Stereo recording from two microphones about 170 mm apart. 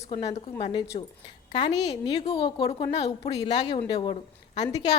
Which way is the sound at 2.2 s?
30° left (ahead or behind).